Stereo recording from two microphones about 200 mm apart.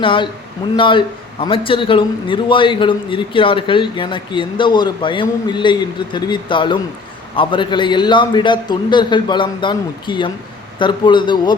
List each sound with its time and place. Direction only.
0.0 s a man's voice: 25° left (ahead or behind)